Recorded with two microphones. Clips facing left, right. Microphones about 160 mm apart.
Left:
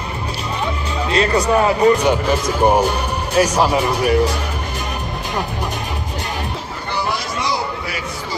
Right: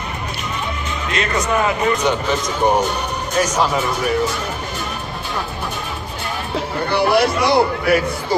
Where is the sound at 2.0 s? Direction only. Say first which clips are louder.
Left 2 dB; 10° left (ahead or behind).